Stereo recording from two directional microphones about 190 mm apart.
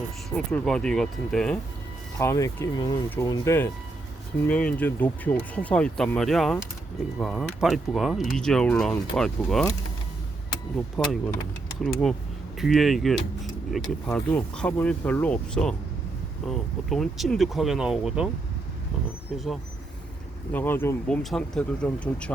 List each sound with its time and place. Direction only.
0.3 s speech: centre (ahead or behind)
2.1 s speech: 15° left (ahead or behind); by 9.6 s centre (ahead or behind)
11.0 s speech: centre (ahead or behind)
20.5 s speech: 10° left (ahead or behind)